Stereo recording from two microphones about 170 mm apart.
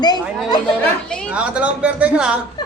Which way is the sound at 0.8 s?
5° left (ahead or behind).